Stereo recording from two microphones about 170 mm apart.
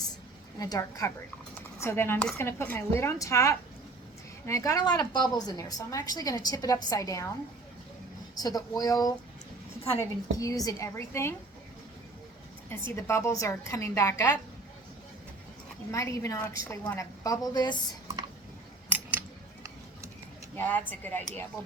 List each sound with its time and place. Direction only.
0.6 s a woman's voice: 20° left (ahead or behind)
8.4 s a woman's voice: 20° left (ahead or behind)
13.0 s a woman's voice: 15° left (ahead or behind)
15.9 s a woman's voice: 20° left (ahead or behind)
18.9 s a sound: 10° right (ahead or behind)
20.6 s a woman's voice: 10° left (ahead or behind)